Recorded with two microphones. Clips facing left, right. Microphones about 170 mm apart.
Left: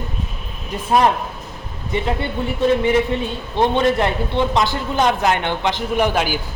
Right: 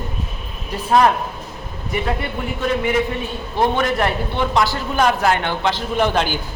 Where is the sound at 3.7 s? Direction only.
25° left (ahead or behind).